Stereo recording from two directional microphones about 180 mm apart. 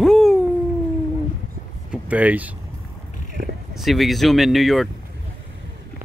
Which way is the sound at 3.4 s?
60° right (ahead or behind).